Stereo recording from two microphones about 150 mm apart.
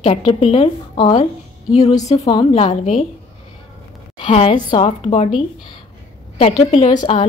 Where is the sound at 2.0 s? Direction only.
25° left (ahead or behind); by 3.0 s 45° left (ahead or behind).